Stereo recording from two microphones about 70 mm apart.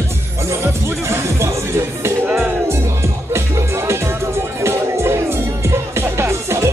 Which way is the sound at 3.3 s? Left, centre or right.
Right.